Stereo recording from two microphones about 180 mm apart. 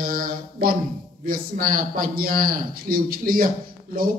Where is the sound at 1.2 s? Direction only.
50° right (ahead or behind).